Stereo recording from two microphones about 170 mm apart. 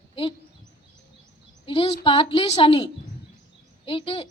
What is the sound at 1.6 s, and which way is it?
A woman's voice, 30° left (ahead or behind).